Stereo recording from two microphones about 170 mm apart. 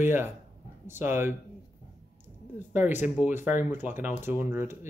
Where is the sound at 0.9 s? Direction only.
15° right (ahead or behind).